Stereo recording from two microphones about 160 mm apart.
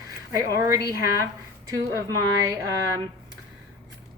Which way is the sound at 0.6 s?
20° right (ahead or behind).